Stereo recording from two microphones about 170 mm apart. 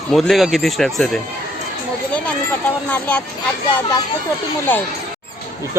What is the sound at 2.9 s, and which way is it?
Speech, 10° left (ahead or behind).